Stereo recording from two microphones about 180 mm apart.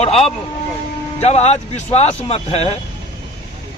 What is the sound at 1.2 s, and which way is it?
Speech, 35° left (ahead or behind).